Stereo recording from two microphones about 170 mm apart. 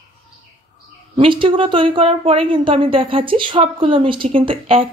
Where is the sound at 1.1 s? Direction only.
30° right (ahead or behind).